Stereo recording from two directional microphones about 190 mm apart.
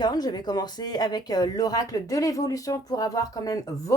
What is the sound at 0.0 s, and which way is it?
Speech, 20° left (ahead or behind).